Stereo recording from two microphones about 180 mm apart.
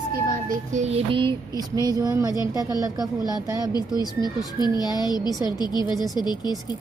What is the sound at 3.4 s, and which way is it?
Speech, 20° right (ahead or behind).